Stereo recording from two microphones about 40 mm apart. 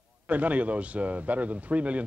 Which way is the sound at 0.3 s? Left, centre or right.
Right.